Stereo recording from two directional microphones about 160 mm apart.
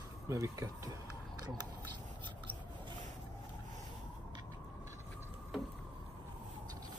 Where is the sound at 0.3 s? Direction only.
20° right (ahead or behind).